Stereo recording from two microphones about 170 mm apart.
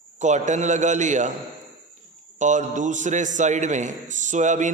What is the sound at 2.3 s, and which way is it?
A man's voice, 45° right (ahead or behind).